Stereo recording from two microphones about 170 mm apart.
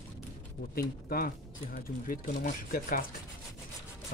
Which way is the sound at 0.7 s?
60° left (ahead or behind).